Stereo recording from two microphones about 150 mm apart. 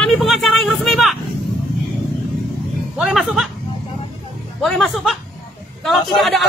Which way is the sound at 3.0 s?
Centre (ahead or behind).